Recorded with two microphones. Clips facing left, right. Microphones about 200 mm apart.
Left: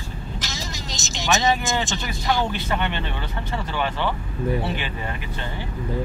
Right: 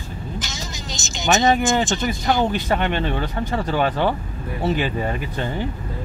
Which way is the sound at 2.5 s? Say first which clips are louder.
Right 4 dB; 45° right (ahead or behind).